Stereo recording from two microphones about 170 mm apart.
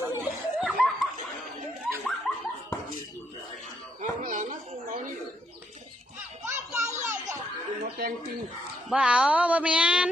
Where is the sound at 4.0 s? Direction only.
50° right (ahead or behind).